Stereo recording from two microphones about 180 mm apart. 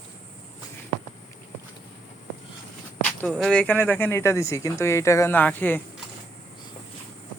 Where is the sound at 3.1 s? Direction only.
5° left (ahead or behind).